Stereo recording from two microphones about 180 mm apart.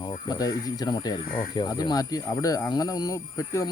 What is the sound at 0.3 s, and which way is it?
Speech, 20° left (ahead or behind).